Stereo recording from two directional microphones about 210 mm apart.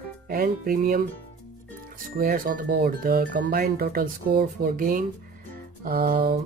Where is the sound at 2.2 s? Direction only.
45° right (ahead or behind).